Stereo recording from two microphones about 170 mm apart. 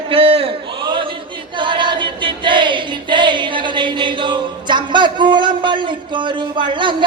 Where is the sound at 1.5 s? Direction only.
30° right (ahead or behind).